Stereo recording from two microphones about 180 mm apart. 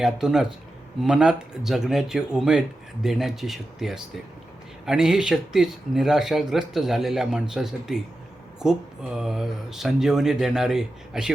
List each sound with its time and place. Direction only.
0.0 s speech: 5° right (ahead or behind)